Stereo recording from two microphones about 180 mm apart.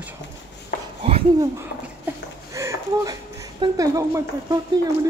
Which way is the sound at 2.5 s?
15° right (ahead or behind).